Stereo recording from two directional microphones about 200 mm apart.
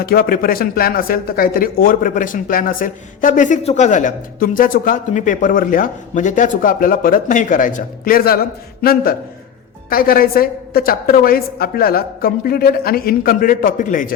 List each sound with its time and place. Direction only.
0.0 s speech: 45° left (ahead or behind)